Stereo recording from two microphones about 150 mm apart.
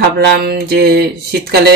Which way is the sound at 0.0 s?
90° right.